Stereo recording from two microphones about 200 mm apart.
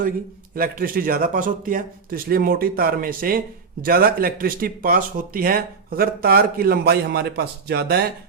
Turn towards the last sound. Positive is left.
turn(degrees=-55)  # may be behind; listen again after turning